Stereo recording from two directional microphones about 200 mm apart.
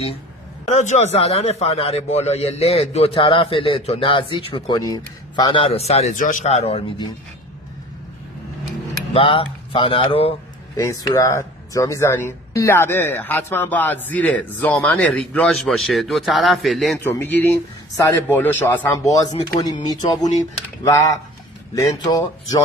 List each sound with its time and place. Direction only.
0.7 s a man's voice: 35° left (ahead or behind)
9.1 s speech: 25° left (ahead or behind)
10.8 s speech: 15° left (ahead or behind)
19.4 s speech: 20° left (ahead or behind)
21.7 s speech: 20° left (ahead or behind)